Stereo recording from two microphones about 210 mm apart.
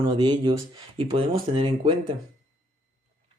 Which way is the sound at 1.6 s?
20° right (ahead or behind).